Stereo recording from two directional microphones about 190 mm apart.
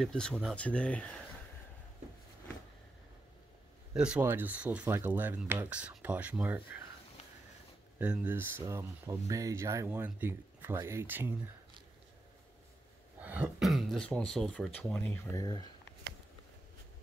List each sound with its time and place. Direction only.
0.0 s speech: 5° left (ahead or behind)
3.9 s speech: 5° right (ahead or behind)
8.0 s speech: 10° right (ahead or behind)
13.2 s speech: 10° right (ahead or behind)
15.4 s speech: 20° left (ahead or behind)